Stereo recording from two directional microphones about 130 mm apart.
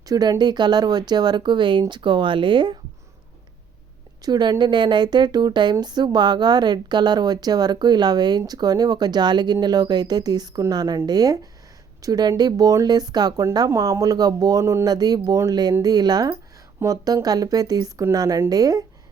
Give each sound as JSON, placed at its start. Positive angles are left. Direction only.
{"t": 0.0, "sound": "a woman's voice", "side_deg": -30}
{"t": 4.2, "sound": "a woman's voice", "side_deg": -30}